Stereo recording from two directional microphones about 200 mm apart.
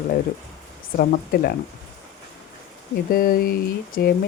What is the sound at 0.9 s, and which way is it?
Speech, 50° left (ahead or behind).